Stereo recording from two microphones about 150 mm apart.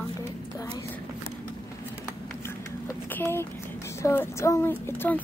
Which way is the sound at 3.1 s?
15° left (ahead or behind).